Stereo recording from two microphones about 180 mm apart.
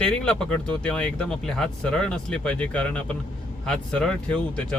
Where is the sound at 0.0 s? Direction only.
5° left (ahead or behind).